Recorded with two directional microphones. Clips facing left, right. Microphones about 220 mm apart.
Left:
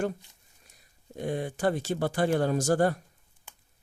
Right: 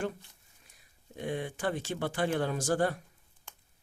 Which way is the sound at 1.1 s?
40° left (ahead or behind).